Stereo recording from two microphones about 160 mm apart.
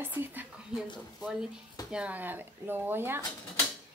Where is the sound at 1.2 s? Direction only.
5° right (ahead or behind).